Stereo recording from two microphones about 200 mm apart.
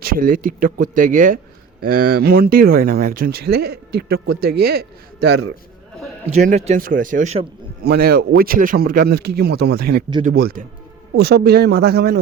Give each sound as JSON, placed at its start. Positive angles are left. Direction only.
{"t": 0.0, "sound": "speech", "side_deg": -45}
{"t": 6.3, "sound": "speech", "side_deg": -35}
{"t": 7.9, "sound": "speech", "side_deg": -50}